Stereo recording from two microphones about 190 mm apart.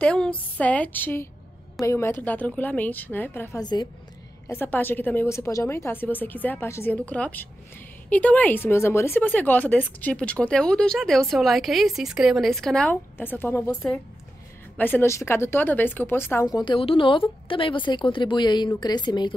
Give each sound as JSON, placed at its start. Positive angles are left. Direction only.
{"t": 0.0, "sound": "a woman's voice", "side_deg": 5}
{"t": 4.5, "sound": "a woman's voice", "side_deg": 10}